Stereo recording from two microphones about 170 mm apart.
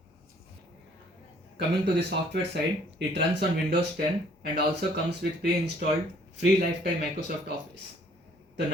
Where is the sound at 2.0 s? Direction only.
90° right.